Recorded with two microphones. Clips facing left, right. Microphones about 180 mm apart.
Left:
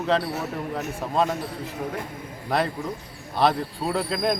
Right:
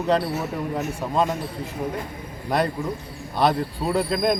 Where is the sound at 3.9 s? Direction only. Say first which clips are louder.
Right 3 dB; centre (ahead or behind).